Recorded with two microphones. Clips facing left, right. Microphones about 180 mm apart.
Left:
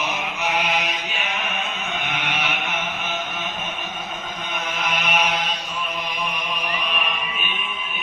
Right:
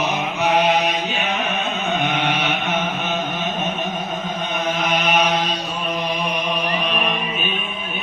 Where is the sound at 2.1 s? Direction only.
35° right (ahead or behind).